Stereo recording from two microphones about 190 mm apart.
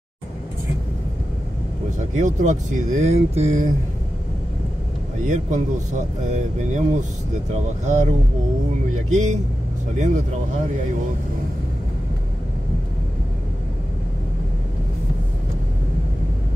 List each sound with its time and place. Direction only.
2.1 s speech: 40° right (ahead or behind)
5.2 s speech: 40° right (ahead or behind)
9.1 s speech: 40° right (ahead or behind)